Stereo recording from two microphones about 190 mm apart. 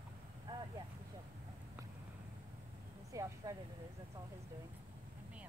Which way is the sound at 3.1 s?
15° right (ahead or behind).